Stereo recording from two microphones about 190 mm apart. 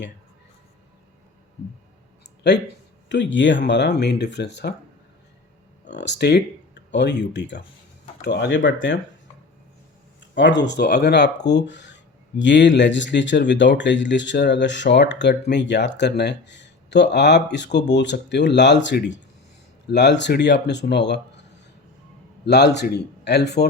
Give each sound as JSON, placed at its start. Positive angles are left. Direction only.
{"t": 3.3, "sound": "speech", "side_deg": 75}
{"t": 5.8, "sound": "speech", "side_deg": 65}
{"t": 10.6, "sound": "speech", "side_deg": 60}
{"t": 22.4, "sound": "speech", "side_deg": 65}